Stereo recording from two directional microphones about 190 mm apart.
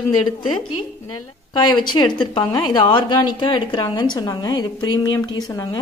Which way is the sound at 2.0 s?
25° left (ahead or behind).